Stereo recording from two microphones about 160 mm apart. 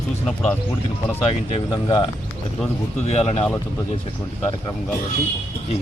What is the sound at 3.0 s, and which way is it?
Speech, 40° left (ahead or behind).